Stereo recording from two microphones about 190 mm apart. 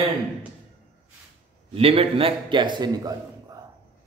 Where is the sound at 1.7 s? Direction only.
30° right (ahead or behind).